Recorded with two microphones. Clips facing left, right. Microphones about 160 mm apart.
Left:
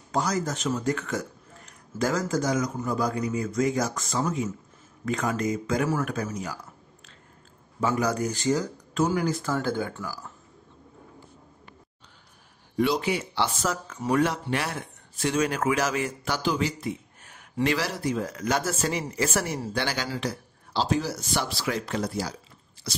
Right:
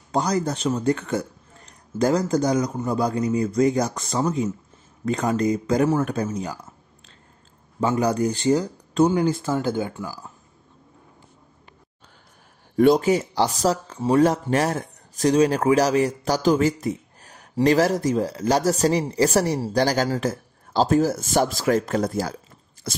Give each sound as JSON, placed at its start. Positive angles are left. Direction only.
{"t": 0.1, "sound": "a man's voice", "side_deg": -35}
{"t": 7.8, "sound": "speech", "side_deg": -30}
{"t": 12.7, "sound": "a man's voice", "side_deg": -50}
{"t": 14.3, "sound": "a man's voice", "side_deg": -45}
{"t": 22.8, "sound": "a sound", "side_deg": -50}